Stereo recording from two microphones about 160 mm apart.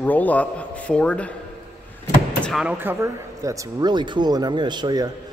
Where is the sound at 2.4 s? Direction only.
5° right (ahead or behind); by 5.1 s 25° right (ahead or behind).